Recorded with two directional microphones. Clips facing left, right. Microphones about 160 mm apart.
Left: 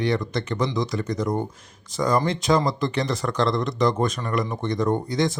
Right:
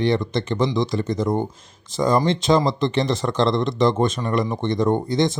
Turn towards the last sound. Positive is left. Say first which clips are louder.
# right 3 dB
turn(degrees=-25)  # may be behind; listen again after turning